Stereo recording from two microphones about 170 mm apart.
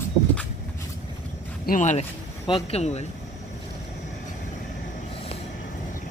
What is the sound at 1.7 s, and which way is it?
Speech, 45° left (ahead or behind).